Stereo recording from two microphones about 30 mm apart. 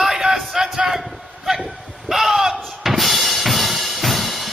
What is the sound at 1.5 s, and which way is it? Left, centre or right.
Music, centre.